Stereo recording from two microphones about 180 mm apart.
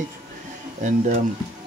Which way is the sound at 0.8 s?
45° right (ahead or behind).